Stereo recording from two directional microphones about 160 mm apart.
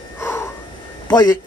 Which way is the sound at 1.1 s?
25° left (ahead or behind).